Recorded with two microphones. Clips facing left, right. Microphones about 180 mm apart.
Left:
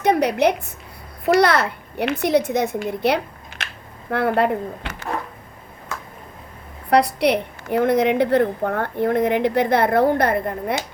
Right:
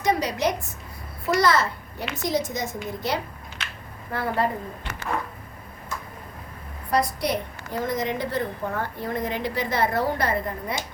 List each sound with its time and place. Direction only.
0.0 s a woman's voice: 60° left (ahead or behind)
6.9 s a woman's voice: 65° left (ahead or behind)